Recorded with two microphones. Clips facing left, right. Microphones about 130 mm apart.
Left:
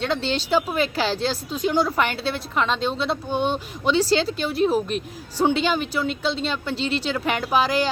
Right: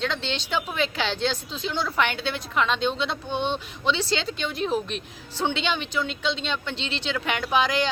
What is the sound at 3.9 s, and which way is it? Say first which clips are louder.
Speech: left 9 dB; 40° left (ahead or behind).